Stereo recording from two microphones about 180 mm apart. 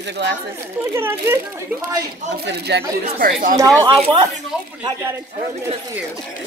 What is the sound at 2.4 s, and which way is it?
Speech, 65° right (ahead or behind).